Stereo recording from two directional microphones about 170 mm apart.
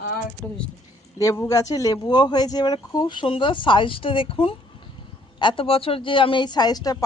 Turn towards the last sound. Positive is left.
turn(degrees=20)  # may be behind; listen again after turning